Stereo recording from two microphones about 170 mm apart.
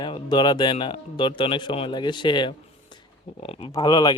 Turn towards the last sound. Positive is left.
turn(degrees=25)  # may be behind; listen again after turning